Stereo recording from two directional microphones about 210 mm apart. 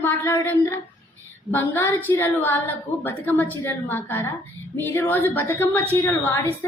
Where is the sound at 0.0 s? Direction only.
10° left (ahead or behind).